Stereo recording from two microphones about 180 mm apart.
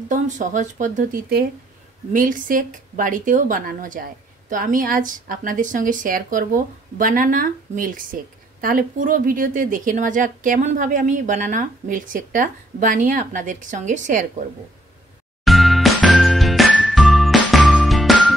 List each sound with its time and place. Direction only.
0.1 s speech: 45° right (ahead or behind)
15.4 s music: centre (ahead or behind)